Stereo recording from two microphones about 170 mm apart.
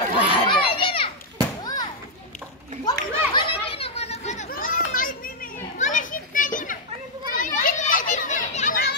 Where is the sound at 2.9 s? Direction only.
30° left (ahead or behind).